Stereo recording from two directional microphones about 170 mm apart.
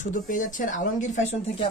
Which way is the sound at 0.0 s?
50° left (ahead or behind).